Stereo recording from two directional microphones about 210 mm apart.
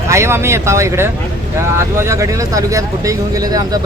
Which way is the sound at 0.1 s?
10° right (ahead or behind).